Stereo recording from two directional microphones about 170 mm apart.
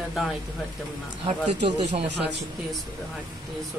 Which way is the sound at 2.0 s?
90° right.